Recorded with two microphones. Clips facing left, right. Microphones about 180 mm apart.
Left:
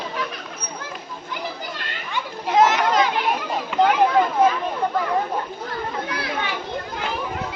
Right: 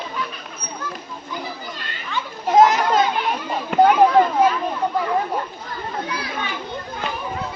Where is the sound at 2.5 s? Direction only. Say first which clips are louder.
Right 3 dB; 45° right (ahead or behind).